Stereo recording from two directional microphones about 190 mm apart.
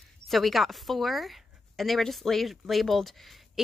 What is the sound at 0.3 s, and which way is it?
A woman's voice, centre (ahead or behind).